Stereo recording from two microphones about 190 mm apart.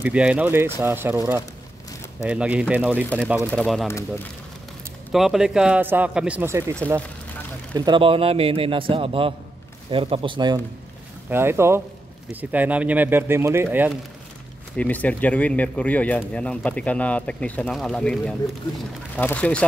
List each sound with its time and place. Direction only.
0.0 s speech: 5° right (ahead or behind)
3.4 s speech: centre (ahead or behind)
5.1 s speech: centre (ahead or behind); by 10.6 s 25° right (ahead or behind)
11.2 s speech: 10° right (ahead or behind)
14.8 s speech: 10° left (ahead or behind)